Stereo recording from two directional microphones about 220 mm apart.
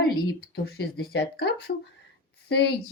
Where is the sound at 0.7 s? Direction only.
50° left (ahead or behind).